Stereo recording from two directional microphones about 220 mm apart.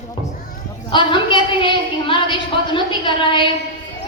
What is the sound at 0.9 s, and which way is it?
A woman's voice, 20° left (ahead or behind).